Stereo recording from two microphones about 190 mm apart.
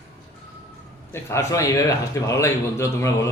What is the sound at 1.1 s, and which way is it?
A man's voice, 15° left (ahead or behind).